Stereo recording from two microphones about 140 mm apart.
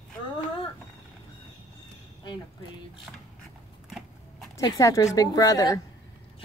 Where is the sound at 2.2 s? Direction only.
30° left (ahead or behind).